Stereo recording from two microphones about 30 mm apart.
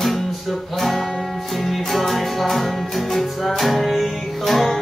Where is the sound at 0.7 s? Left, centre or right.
Centre.